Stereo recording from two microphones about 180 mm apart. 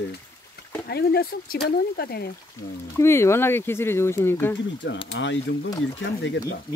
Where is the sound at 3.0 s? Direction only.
15° left (ahead or behind).